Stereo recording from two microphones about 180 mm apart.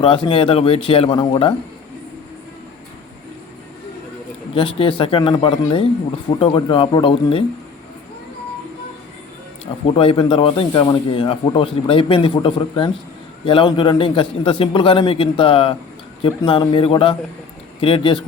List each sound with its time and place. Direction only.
0.0 s speech: 30° left (ahead or behind)
4.5 s speech: 30° left (ahead or behind)
9.8 s speech: 30° left (ahead or behind)